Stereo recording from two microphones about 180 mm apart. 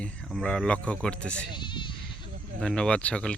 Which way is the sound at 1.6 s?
25° left (ahead or behind).